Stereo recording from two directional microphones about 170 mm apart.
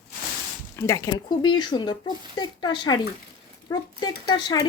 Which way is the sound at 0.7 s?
15° left (ahead or behind).